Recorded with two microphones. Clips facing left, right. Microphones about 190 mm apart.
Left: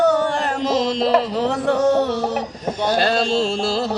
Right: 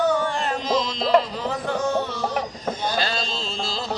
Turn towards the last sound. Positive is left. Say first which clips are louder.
# left 10 dB
turn(degrees=70)  # may be behind; listen again after turning